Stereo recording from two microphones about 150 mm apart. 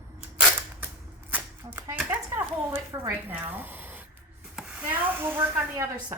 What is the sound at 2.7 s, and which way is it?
Speech, 15° right (ahead or behind).